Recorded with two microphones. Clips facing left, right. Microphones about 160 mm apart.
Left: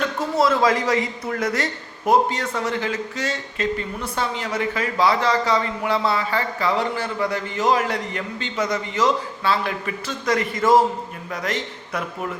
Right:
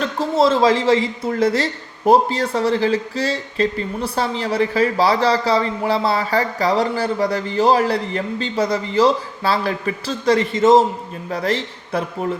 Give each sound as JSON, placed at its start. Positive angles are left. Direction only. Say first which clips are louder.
{"t": 0.2, "sound": "speech", "louder": "right 4 dB", "side_deg": -25}